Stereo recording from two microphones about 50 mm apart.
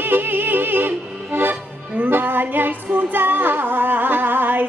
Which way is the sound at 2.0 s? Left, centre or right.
Right.